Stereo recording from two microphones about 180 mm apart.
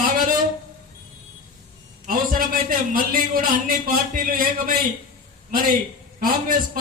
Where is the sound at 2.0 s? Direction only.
50° right (ahead or behind).